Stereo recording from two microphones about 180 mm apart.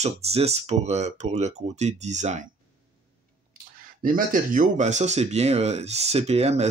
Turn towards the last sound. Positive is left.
turn(degrees=-35)  # may be behind; listen again after turning